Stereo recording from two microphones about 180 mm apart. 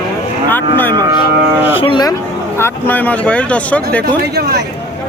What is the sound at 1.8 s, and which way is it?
Speech, 25° left (ahead or behind).